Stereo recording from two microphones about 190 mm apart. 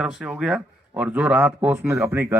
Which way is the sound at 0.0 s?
5° right (ahead or behind).